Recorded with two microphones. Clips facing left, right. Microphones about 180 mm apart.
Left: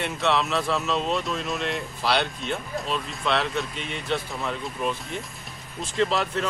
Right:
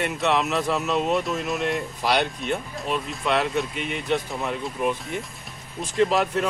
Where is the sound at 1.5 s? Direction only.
Centre (ahead or behind).